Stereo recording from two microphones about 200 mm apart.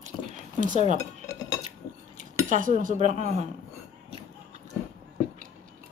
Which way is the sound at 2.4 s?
40° right (ahead or behind).